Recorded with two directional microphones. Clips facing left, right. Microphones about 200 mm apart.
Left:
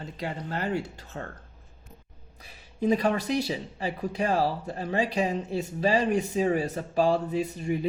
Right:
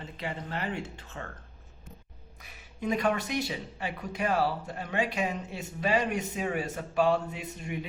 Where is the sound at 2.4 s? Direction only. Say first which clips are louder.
Left 7 dB; 30° left (ahead or behind).